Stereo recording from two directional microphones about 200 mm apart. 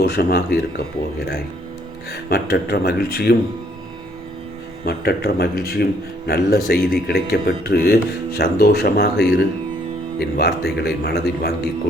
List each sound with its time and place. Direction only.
0.0 s speech: 50° left (ahead or behind)
2.3 s speech: 50° left (ahead or behind)
4.9 s speech: 50° left (ahead or behind)